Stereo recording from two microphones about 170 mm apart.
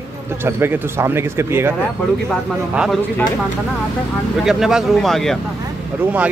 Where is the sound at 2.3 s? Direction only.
Centre (ahead or behind).